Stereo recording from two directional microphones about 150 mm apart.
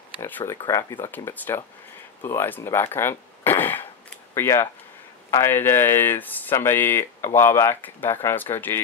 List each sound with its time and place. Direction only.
0.2 s speech: 15° left (ahead or behind)